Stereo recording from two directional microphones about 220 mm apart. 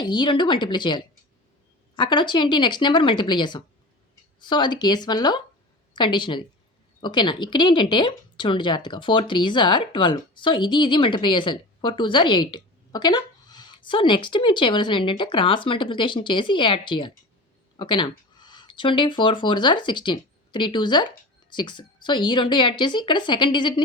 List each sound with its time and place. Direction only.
0.0 s speech: 20° left (ahead or behind)